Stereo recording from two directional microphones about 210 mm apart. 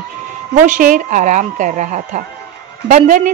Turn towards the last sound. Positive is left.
turn(degrees=-40)  # may be behind; listen again after turning